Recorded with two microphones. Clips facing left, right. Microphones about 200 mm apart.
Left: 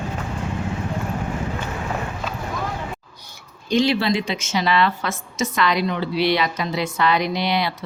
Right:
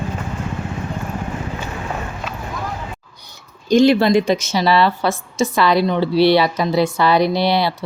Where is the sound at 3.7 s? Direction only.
45° right (ahead or behind).